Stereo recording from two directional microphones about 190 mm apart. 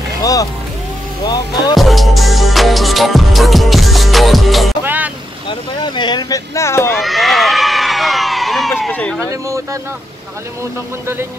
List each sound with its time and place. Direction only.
0.2 s speech: 20° left (ahead or behind)
1.8 s music: centre (ahead or behind)
4.8 s vehicle: 10° right (ahead or behind)
5.5 s speech: 25° left (ahead or behind)
7.0 s crowd: centre (ahead or behind)
9.2 s speech: 15° right (ahead or behind)